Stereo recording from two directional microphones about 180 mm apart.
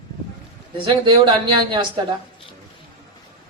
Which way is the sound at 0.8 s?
25° right (ahead or behind).